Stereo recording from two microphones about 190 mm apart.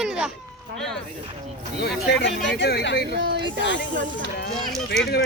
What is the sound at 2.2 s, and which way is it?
Speech, 70° left (ahead or behind).